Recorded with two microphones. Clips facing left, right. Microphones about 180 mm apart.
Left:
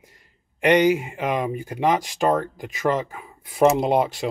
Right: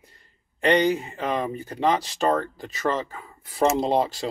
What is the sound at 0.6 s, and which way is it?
Speech, 10° left (ahead or behind).